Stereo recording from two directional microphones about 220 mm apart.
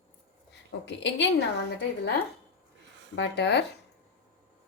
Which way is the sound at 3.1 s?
55° left (ahead or behind).